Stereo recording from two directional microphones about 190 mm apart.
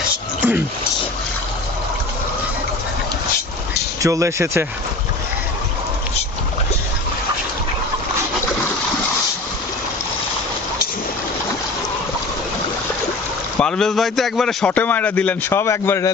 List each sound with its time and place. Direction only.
4.0 s speech: 15° right (ahead or behind)
13.6 s speech: 5° left (ahead or behind)